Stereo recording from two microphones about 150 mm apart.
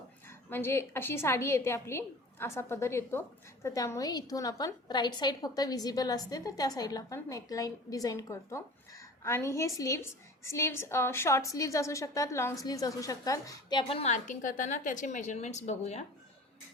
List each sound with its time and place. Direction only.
0.3 s a woman's voice: 15° left (ahead or behind)
13.8 s a woman's voice: 40° left (ahead or behind)